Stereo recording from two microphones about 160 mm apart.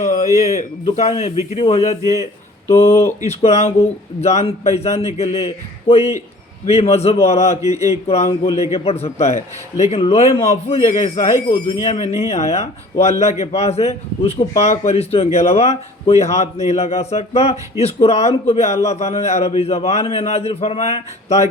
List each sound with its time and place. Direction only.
0.0 s a sound: 55° left (ahead or behind)
0.9 s speech: 45° left (ahead or behind)
2.6 s speech: 15° left (ahead or behind)
3.2 s a man's voice: 45° left (ahead or behind)